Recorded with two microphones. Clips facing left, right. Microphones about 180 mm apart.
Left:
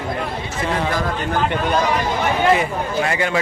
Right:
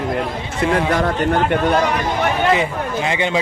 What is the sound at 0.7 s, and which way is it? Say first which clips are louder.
Speech: right 4 dB; 65° right (ahead or behind).